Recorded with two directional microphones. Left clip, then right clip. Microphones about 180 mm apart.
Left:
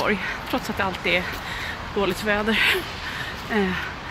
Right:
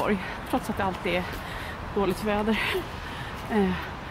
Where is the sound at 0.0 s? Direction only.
10° right (ahead or behind).